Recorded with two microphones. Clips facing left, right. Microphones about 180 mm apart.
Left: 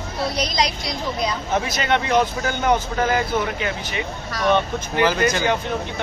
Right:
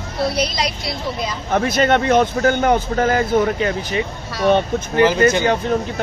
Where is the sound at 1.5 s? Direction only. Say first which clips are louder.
Right 7 dB; 55° right (ahead or behind).